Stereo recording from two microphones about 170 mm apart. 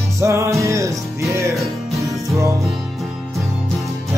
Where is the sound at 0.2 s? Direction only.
15° right (ahead or behind).